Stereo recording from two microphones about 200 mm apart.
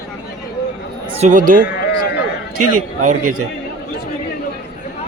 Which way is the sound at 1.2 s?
40° right (ahead or behind).